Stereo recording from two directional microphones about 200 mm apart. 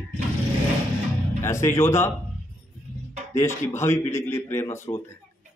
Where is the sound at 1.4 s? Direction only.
15° left (ahead or behind).